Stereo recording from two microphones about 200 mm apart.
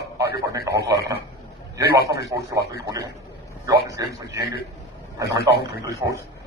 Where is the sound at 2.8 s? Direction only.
15° right (ahead or behind).